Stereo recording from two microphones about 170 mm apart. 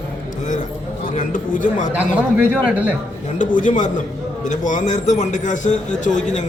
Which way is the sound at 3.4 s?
50° left (ahead or behind).